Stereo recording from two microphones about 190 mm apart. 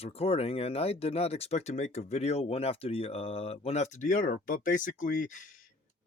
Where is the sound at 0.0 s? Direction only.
30° left (ahead or behind).